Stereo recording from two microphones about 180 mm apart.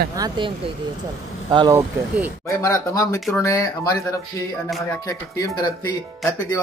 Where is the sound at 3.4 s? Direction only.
20° left (ahead or behind).